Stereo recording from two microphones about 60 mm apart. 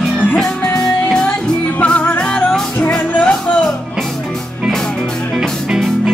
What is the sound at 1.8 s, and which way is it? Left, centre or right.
Music, left.